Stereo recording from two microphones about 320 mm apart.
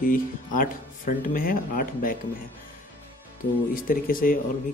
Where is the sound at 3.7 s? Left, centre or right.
Left.